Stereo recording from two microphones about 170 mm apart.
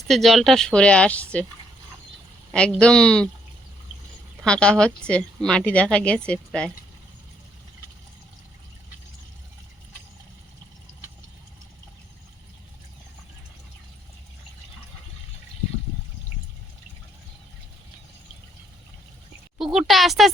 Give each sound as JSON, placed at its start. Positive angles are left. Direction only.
{"t": 0.1, "sound": "speech", "side_deg": 0}
{"t": 2.5, "sound": "speech", "side_deg": 5}
{"t": 4.4, "sound": "speech", "side_deg": 5}
{"t": 19.5, "sound": "a sound", "side_deg": 0}